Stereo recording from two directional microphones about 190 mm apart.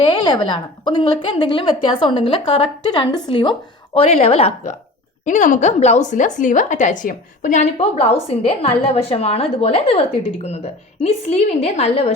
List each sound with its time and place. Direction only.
0.1 s a woman's voice: 25° left (ahead or behind)